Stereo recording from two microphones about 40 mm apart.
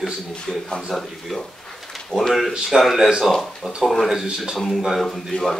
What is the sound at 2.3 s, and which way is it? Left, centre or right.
A man's voice, centre.